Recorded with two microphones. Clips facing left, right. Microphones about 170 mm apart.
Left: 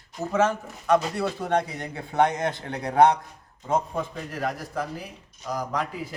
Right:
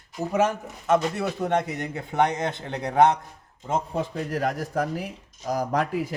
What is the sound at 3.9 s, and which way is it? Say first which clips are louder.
A man's voice: right 4 dB; 40° right (ahead or behind).